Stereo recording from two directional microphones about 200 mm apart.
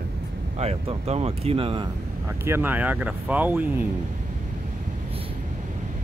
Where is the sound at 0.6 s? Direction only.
30° right (ahead or behind).